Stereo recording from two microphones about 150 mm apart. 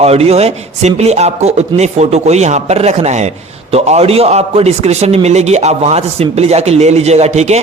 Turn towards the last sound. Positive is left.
turn(degrees=-50)  # may be behind; listen again after turning